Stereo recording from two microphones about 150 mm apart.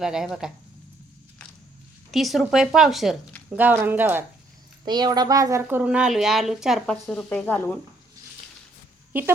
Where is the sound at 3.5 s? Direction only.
10° right (ahead or behind).